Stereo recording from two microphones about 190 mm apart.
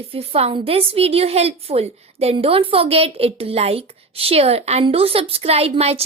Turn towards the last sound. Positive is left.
turn(degrees=-30)  # may be behind; listen again after turning